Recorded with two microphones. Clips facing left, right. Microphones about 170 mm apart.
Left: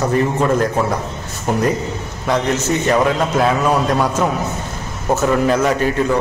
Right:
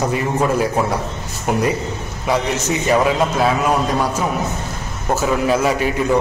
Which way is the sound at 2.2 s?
5° right (ahead or behind).